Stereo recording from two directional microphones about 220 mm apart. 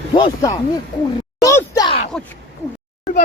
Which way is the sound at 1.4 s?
15° left (ahead or behind).